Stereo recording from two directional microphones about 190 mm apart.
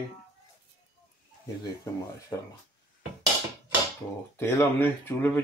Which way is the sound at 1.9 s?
20° left (ahead or behind).